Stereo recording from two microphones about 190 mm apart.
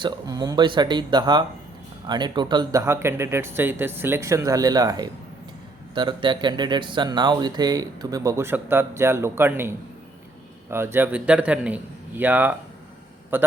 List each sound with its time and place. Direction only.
0.0 s speech: 20° right (ahead or behind)